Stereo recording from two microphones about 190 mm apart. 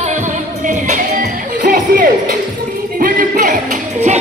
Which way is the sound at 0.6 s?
40° right (ahead or behind).